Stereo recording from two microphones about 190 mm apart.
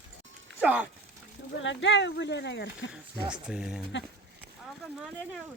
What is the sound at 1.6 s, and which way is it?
Speech, 75° left (ahead or behind).